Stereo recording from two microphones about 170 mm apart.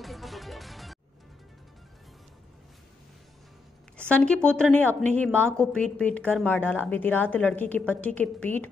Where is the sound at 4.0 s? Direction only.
5° left (ahead or behind).